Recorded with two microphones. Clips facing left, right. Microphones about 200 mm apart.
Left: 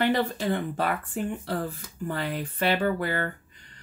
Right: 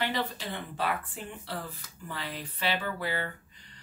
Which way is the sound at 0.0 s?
50° left (ahead or behind).